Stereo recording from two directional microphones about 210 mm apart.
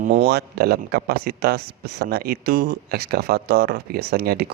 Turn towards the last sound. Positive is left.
turn(degrees=-50)  # may be behind; listen again after turning